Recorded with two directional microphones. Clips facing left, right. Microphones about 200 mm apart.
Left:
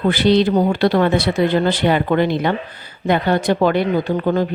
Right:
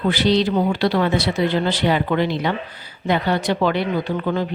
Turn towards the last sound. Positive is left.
turn(degrees=45)  # may be behind; listen again after turning